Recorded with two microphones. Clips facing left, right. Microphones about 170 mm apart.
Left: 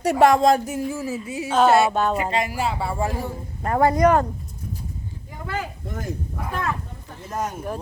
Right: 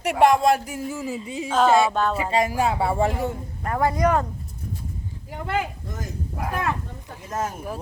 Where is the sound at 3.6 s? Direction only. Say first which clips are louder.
Left 4 dB; 40° left (ahead or behind).